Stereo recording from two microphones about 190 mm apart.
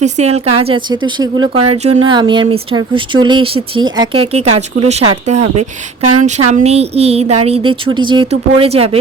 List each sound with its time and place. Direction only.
0.0 s speech: 35° right (ahead or behind)